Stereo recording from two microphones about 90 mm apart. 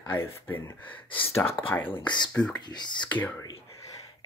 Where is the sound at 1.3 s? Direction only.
30° left (ahead or behind).